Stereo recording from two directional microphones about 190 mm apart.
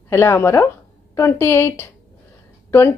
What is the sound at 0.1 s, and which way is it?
A woman's voice, 10° left (ahead or behind).